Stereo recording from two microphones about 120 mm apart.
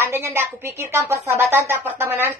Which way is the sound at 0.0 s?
20° right (ahead or behind).